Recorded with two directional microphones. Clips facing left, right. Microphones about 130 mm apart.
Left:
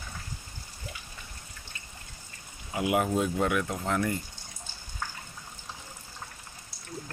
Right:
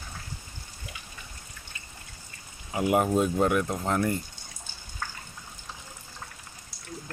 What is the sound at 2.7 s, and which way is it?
Speech, 45° right (ahead or behind).